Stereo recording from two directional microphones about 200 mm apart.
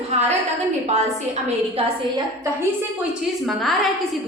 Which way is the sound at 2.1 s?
15° right (ahead or behind).